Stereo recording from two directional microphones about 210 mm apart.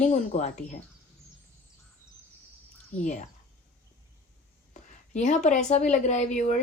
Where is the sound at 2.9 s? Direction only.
5° left (ahead or behind).